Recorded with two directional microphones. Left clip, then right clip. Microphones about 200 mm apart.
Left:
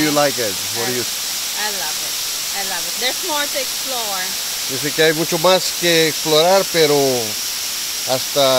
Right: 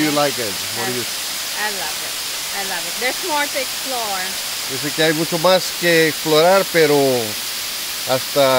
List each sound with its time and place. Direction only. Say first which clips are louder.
5.0 s speech: left 2 dB; 50° left (ahead or behind)
5.4 s speech: even; 20° left (ahead or behind); by 8.5 s centre (ahead or behind)